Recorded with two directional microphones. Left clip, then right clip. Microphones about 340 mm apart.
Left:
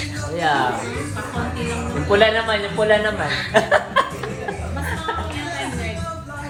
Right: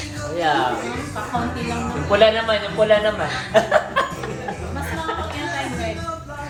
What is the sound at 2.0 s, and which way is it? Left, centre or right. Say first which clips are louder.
Speech: right 1 dB; left.